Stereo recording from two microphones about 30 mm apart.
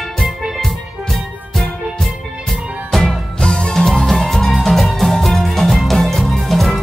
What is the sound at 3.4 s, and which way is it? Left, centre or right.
Music, left.